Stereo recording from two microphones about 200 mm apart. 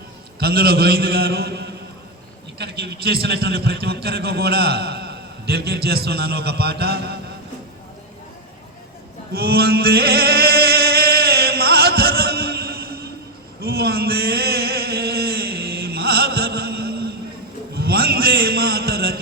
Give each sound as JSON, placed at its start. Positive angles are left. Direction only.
{"t": 0.3, "sound": "a man's voice", "side_deg": -50}
{"t": 9.3, "sound": "chant", "side_deg": -50}
{"t": 13.6, "sound": "a sound", "side_deg": -50}